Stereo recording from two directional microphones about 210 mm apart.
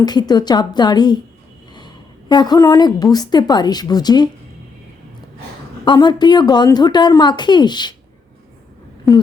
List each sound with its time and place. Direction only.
0.0 s a woman's voice: 20° left (ahead or behind)
2.3 s a woman's voice: 20° left (ahead or behind)
5.8 s a woman's voice: 20° left (ahead or behind)
9.1 s speech: centre (ahead or behind)